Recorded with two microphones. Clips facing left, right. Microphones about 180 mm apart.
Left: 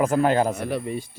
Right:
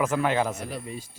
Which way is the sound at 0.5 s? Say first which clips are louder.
Left 8 dB; 60° left (ahead or behind).